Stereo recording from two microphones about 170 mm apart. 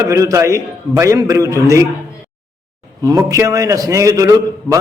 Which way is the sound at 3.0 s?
20° right (ahead or behind).